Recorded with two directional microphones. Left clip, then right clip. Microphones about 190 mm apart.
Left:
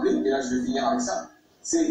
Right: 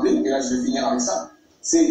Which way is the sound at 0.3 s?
40° right (ahead or behind).